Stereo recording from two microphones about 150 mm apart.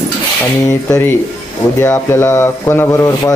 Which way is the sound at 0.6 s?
25° left (ahead or behind).